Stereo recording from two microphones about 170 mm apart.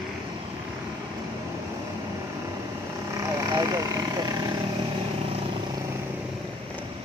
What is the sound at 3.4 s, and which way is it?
Vehicle, 20° right (ahead or behind).